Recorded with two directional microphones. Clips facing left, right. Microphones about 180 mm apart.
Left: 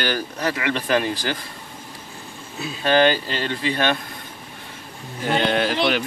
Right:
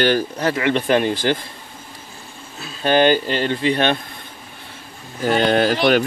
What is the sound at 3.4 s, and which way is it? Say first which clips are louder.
Speech: right 3 dB; 25° right (ahead or behind).